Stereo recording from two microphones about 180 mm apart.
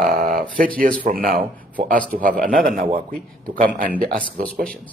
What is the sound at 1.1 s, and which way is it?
Speech, 55° right (ahead or behind).